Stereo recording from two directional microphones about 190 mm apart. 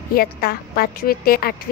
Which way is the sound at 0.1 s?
55° left (ahead or behind).